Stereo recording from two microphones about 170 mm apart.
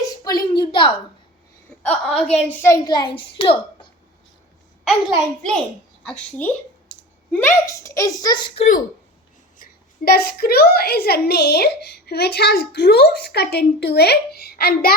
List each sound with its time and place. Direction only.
0.5 s a sound: 25° left (ahead or behind)
1.8 s a woman's voice: 5° left (ahead or behind); by 3.8 s 30° left (ahead or behind)
4.9 s a child's voice: centre (ahead or behind); by 8.6 s 25° left (ahead or behind)
9.6 s a woman's voice: 65° left (ahead or behind)